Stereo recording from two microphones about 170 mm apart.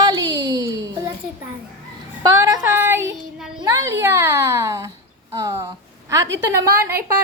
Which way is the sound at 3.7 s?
15° right (ahead or behind).